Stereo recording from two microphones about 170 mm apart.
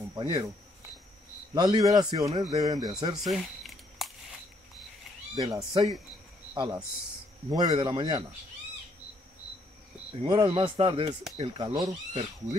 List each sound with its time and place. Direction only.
0.1 s speech: 25° right (ahead or behind)
1.5 s speech: 25° right (ahead or behind)
3.3 s a sound: centre (ahead or behind)
5.3 s speech: 25° right (ahead or behind)
10.2 s speech: 30° right (ahead or behind)